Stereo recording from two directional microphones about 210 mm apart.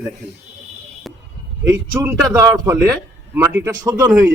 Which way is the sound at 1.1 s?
Centre (ahead or behind).